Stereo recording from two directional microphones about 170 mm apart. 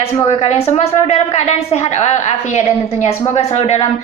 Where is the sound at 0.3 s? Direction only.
35° left (ahead or behind).